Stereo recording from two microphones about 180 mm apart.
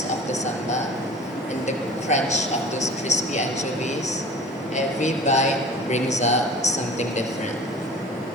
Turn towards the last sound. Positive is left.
turn(degrees=40)  # may be behind; listen again after turning